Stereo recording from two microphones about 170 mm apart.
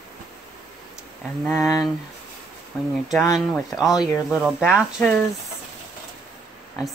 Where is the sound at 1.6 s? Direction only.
20° left (ahead or behind).